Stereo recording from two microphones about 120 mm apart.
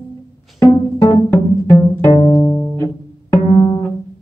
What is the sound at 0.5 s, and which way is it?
Pizzicato, 25° left (ahead or behind).